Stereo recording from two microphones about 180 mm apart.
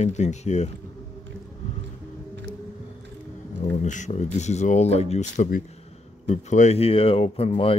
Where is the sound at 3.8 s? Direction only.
40° left (ahead or behind).